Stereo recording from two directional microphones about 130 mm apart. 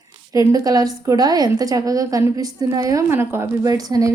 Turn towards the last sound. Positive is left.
turn(degrees=-25)  # may be behind; listen again after turning